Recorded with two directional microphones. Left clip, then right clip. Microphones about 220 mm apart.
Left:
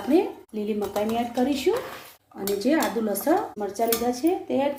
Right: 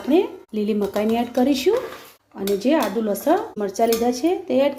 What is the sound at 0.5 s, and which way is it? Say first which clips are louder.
Speech: right 6 dB; 40° right (ahead or behind).